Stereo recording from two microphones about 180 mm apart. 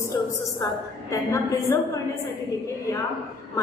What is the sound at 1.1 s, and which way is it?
Speech, 15° left (ahead or behind).